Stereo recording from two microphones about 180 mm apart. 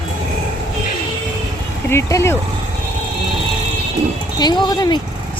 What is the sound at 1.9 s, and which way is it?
Speech, 15° left (ahead or behind).